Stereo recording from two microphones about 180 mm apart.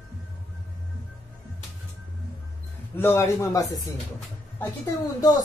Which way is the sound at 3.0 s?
15° left (ahead or behind).